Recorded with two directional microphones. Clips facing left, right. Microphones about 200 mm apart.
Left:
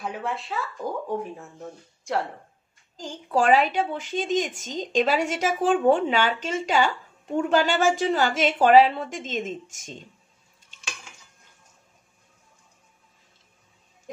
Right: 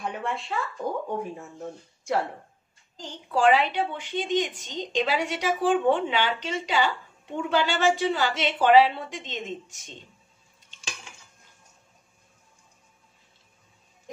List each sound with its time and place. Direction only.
0.0 s speech: centre (ahead or behind)
3.0 s a woman's voice: 45° left (ahead or behind)